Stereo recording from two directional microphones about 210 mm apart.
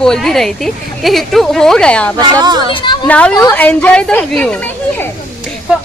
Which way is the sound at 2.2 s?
20° right (ahead or behind).